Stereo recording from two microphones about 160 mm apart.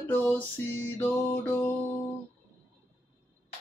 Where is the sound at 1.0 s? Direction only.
10° left (ahead or behind).